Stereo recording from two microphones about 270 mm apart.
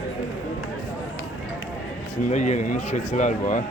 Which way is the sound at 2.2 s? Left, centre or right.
Left.